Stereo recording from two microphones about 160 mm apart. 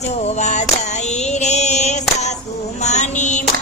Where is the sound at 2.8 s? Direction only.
45° left (ahead or behind).